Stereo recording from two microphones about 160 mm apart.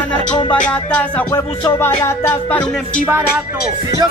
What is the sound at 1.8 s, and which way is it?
Music, 15° left (ahead or behind).